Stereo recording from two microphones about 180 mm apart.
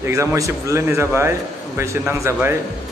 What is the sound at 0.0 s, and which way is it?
A man's voice, 15° right (ahead or behind).